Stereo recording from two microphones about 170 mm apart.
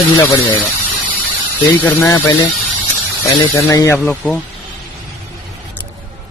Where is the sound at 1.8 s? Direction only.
20° left (ahead or behind).